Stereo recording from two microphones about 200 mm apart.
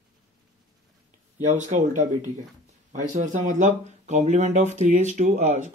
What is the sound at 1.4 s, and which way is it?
Speech, 35° right (ahead or behind).